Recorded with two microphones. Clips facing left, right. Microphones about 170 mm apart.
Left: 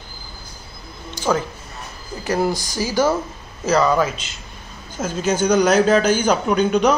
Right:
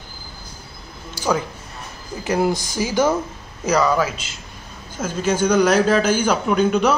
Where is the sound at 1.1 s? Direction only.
10° right (ahead or behind).